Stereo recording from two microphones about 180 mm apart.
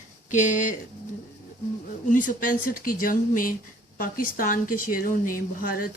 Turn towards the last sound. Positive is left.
turn(degrees=50)  # may be behind; listen again after turning